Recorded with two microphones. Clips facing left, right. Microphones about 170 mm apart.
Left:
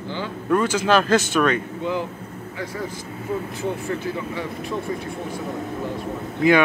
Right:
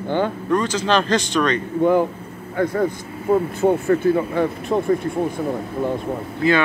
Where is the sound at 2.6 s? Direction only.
55° right (ahead or behind).